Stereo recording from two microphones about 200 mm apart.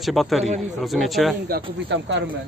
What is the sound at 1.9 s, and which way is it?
Speech, 60° right (ahead or behind).